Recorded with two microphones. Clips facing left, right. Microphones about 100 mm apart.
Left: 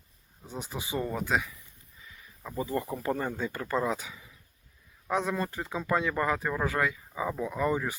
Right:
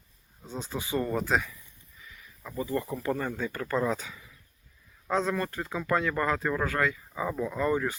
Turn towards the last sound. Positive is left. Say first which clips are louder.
# right 1 dB
turn(degrees=15)  # may be behind; listen again after turning